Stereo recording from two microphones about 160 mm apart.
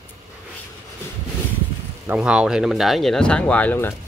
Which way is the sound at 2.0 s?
10° right (ahead or behind).